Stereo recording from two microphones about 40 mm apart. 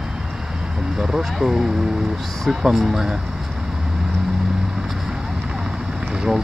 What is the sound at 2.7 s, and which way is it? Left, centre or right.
Speech, centre.